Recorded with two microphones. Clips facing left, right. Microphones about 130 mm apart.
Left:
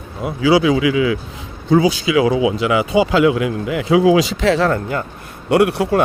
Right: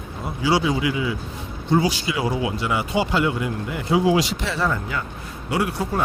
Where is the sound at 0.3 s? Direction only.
90° left.